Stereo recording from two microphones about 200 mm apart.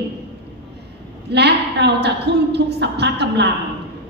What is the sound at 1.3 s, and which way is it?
A woman's voice, 55° right (ahead or behind).